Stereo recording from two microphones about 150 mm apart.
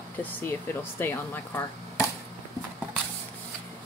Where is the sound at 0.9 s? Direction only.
15° left (ahead or behind).